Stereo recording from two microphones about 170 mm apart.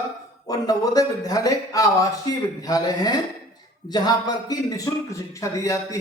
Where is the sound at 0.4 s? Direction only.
20° left (ahead or behind).